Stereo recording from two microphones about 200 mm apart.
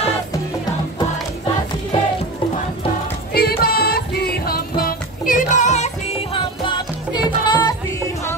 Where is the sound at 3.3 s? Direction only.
50° left (ahead or behind); by 7.7 s 20° left (ahead or behind).